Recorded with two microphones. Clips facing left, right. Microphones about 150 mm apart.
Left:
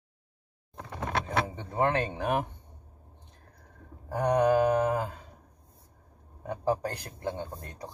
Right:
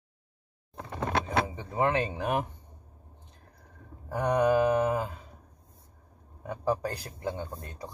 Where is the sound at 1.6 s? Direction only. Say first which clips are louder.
Left 2 dB; 5° right (ahead or behind).